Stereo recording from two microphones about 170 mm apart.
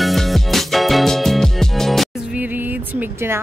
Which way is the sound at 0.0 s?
Centre (ahead or behind).